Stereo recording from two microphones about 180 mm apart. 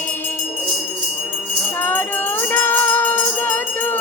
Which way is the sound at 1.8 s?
10° left (ahead or behind).